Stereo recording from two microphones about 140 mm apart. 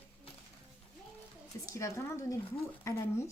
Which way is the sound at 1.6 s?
20° left (ahead or behind).